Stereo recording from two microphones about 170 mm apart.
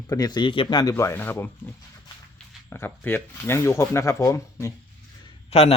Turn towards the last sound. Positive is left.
turn(degrees=35)  # may be behind; listen again after turning